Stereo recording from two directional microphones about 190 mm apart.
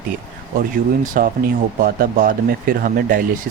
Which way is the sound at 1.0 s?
45° right (ahead or behind).